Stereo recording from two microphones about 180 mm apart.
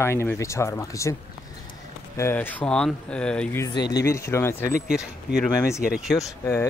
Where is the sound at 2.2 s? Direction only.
10° left (ahead or behind).